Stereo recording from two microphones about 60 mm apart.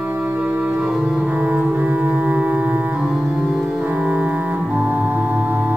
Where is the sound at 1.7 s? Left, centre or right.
Right.